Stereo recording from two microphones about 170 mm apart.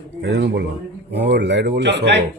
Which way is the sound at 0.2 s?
85° right.